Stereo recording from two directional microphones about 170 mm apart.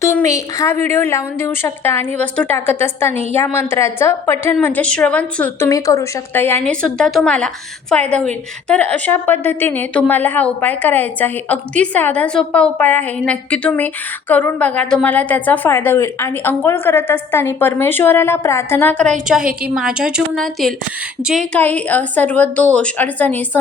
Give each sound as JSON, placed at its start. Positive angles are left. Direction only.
{"t": 0.3, "sound": "a woman's voice", "side_deg": 20}
{"t": 19.7, "sound": "a woman's voice", "side_deg": -5}